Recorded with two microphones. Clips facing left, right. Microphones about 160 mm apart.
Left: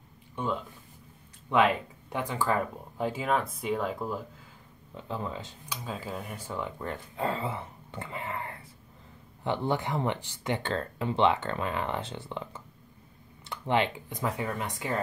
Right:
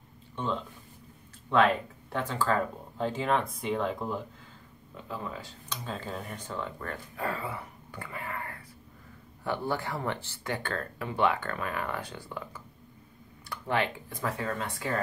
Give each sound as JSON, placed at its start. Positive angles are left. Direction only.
{"t": 0.4, "sound": "speech", "side_deg": 10}
{"t": 4.9, "sound": "speech", "side_deg": 25}
{"t": 5.7, "sound": "speech", "side_deg": 5}